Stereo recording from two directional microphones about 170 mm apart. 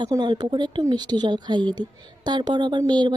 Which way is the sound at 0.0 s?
25° right (ahead or behind).